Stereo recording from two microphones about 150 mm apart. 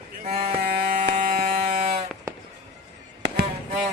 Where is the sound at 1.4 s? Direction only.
50° right (ahead or behind).